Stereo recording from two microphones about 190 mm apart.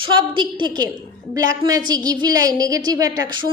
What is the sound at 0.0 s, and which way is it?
A woman's voice, 25° right (ahead or behind).